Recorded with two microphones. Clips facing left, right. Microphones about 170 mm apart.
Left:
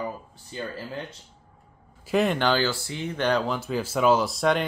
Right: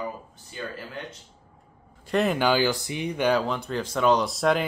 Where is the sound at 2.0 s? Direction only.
Centre (ahead or behind).